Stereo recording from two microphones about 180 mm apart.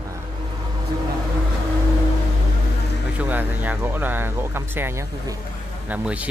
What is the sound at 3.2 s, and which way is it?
Speech, 10° right (ahead or behind).